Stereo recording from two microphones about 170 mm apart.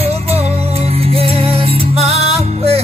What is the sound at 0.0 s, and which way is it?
Music, 35° right (ahead or behind).